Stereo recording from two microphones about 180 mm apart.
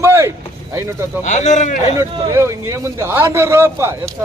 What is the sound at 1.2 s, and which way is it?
Speech, 40° left (ahead or behind).